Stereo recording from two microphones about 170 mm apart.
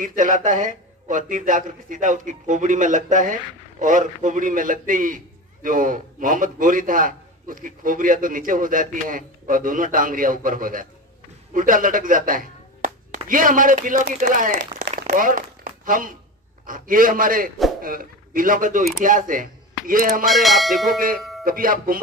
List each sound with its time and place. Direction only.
0.0 s a man's voice: 50° right (ahead or behind)
11.5 s a sound: 50° right (ahead or behind)
13.3 s a man's voice: 55° right (ahead or behind)
14.6 s crumpling: 60° right (ahead or behind)
16.6 s a man's voice: 55° right (ahead or behind)
20.2 s speech: centre (ahead or behind)
21.5 s speech: 55° right (ahead or behind)